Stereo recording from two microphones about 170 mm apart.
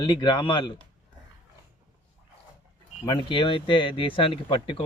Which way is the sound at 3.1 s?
30° left (ahead or behind).